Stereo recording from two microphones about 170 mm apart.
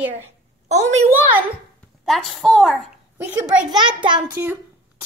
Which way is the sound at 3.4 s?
25° right (ahead or behind).